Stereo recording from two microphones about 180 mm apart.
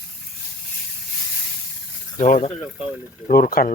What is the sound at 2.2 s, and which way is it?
Speech, 45° left (ahead or behind).